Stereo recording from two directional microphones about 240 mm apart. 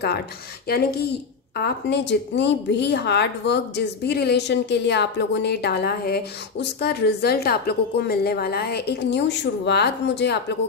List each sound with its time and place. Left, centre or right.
0.7 s a woman's voice: left